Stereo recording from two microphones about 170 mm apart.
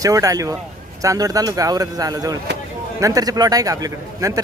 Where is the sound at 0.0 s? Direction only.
20° right (ahead or behind).